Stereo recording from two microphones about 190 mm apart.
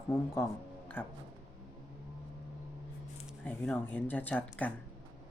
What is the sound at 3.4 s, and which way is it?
A woman's voice, 10° left (ahead or behind).